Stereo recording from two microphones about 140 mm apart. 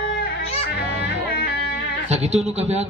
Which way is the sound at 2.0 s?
50° right (ahead or behind).